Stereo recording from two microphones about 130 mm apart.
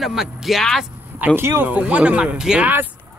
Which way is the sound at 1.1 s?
15° right (ahead or behind).